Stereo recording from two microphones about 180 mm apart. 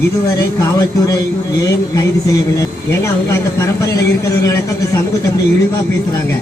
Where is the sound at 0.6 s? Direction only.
20° left (ahead or behind).